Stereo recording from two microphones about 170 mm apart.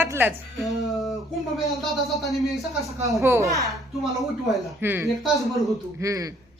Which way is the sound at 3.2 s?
15° right (ahead or behind).